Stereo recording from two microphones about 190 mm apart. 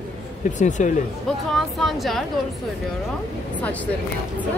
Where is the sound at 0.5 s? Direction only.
40° left (ahead or behind).